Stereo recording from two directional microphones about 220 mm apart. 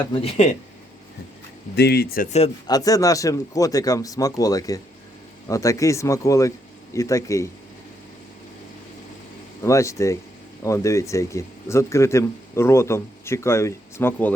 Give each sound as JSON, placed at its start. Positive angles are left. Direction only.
{"t": 0.1, "sound": "speech", "side_deg": 25}
{"t": 1.7, "sound": "speech", "side_deg": 50}
{"t": 2.6, "sound": "speech", "side_deg": 15}
{"t": 9.6, "sound": "speech", "side_deg": 15}